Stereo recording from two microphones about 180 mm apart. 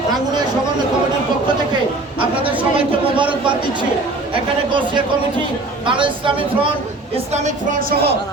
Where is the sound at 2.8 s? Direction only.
30° right (ahead or behind).